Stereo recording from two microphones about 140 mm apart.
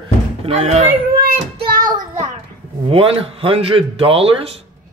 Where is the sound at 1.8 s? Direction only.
30° right (ahead or behind).